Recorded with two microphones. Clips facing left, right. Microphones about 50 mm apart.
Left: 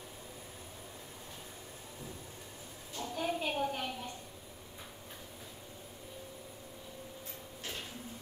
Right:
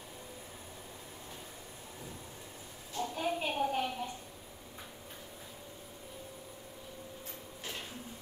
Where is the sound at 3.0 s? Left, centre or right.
Centre.